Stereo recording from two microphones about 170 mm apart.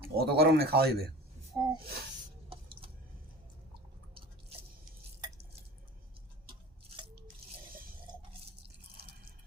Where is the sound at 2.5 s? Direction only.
35° right (ahead or behind).